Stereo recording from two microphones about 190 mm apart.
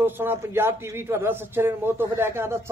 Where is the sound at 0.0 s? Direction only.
10° right (ahead or behind).